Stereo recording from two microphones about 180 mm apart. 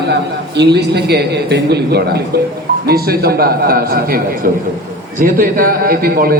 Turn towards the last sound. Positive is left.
turn(degrees=-55)  # may be behind; listen again after turning